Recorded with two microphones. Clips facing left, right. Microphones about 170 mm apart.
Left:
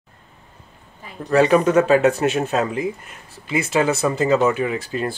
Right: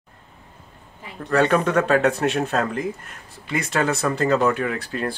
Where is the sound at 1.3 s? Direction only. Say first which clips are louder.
Left 4 dB; 5° left (ahead or behind).